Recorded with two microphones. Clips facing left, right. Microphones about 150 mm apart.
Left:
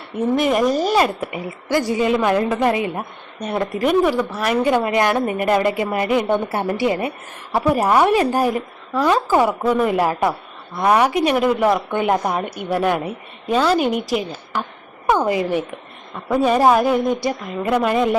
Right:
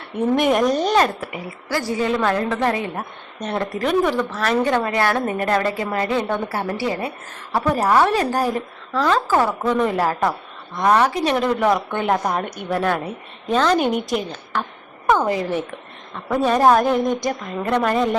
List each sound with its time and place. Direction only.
0.3 s speech: centre (ahead or behind)
1.2 s a woman's voice: 20° left (ahead or behind); by 14.6 s 5° left (ahead or behind)
15.0 s a woman's voice: 15° left (ahead or behind)